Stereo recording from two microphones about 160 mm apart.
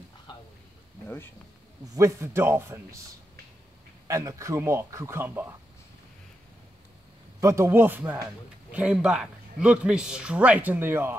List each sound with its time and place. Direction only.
0.3 s a sound: 30° left (ahead or behind)
2.0 s speech: 20° right (ahead or behind)
4.1 s speech: 20° right (ahead or behind)
7.3 s speech: 20° right (ahead or behind)